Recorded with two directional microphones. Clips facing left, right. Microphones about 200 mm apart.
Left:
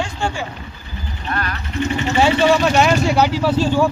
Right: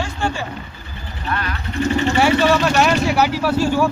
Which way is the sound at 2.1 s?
20° left (ahead or behind).